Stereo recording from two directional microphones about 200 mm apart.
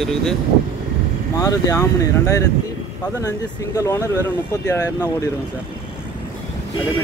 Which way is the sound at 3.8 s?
15° left (ahead or behind).